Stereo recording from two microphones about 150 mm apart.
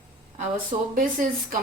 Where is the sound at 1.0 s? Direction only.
60° right (ahead or behind).